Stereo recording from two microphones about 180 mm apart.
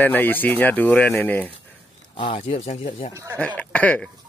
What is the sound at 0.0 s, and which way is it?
Speech, 10° left (ahead or behind).